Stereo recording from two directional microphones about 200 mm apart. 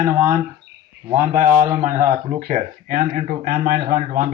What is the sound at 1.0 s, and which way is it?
Speech, 10° right (ahead or behind).